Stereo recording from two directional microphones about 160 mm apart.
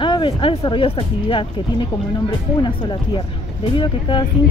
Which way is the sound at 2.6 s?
30° left (ahead or behind).